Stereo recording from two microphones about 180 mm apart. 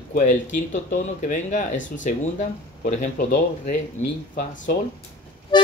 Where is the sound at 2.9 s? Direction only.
40° left (ahead or behind).